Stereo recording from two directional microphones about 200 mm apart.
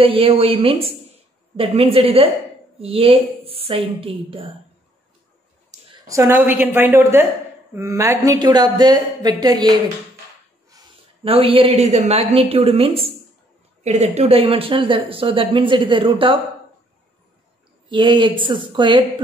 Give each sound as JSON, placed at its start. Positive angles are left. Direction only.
{"t": 0.0, "sound": "speech", "side_deg": -25}
{"t": 5.7, "sound": "a sound", "side_deg": -35}
{"t": 6.0, "sound": "speech", "side_deg": -15}
{"t": 11.2, "sound": "speech", "side_deg": -30}
{"t": 17.8, "sound": "speech", "side_deg": -25}